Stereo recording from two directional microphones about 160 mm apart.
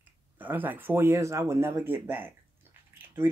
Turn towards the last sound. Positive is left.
turn(degrees=-15)  # may be behind; listen again after turning